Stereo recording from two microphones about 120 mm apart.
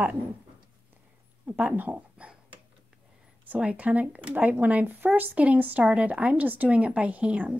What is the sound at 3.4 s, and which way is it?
Speech, 10° right (ahead or behind).